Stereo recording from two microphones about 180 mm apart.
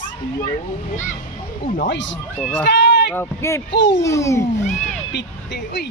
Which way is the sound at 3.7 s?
75° left (ahead or behind).